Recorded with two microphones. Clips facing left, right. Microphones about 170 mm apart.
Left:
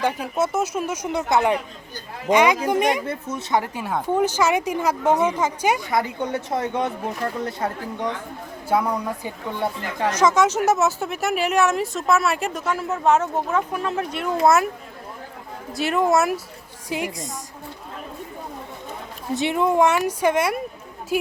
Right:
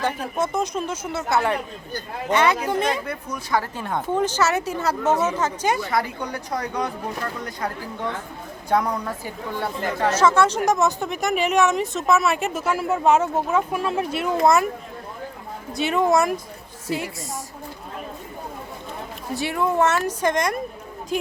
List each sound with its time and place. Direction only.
0.0 s a woman's voice: 10° left (ahead or behind)
3.0 s speech: 25° left (ahead or behind)
3.8 s a woman's voice: 10° left (ahead or behind)
8.7 s a woman's voice: 5° left (ahead or behind)
9.2 s speech: 20° left (ahead or behind); by 14.7 s centre (ahead or behind)
15.7 s speech: centre (ahead or behind)
16.9 s a woman's voice: 20° left (ahead or behind)
19.3 s a woman's voice: 20° left (ahead or behind)